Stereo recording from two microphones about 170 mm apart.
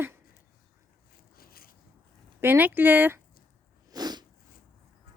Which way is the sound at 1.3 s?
60° left (ahead or behind).